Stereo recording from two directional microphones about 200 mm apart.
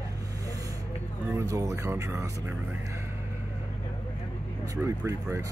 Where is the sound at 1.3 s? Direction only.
15° right (ahead or behind).